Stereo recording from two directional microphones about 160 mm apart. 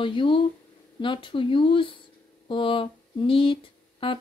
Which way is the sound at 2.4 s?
30° left (ahead or behind).